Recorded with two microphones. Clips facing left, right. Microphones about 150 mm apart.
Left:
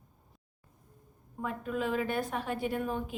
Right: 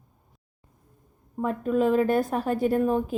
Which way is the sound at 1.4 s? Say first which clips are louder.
Right 10 dB; 40° right (ahead or behind).